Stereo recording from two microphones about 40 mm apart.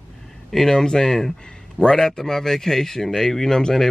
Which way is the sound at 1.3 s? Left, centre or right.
Left.